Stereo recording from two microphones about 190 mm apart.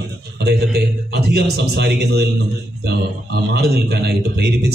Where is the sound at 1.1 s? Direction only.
60° right (ahead or behind).